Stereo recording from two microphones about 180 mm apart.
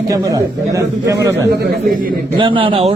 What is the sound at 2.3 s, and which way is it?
Speech, 30° right (ahead or behind).